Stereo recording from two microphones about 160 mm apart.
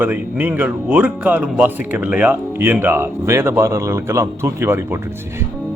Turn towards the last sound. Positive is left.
turn(degrees=-15)  # may be behind; listen again after turning